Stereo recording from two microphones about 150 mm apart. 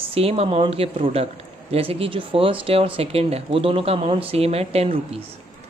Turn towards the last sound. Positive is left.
turn(degrees=-40)  # may be behind; listen again after turning